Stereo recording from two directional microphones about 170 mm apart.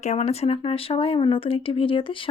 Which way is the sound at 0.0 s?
40° left (ahead or behind).